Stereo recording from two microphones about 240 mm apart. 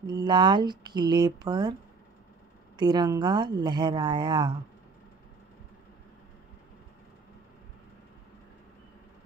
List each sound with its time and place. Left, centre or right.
0.0 s speech: centre
2.8 s speech: centre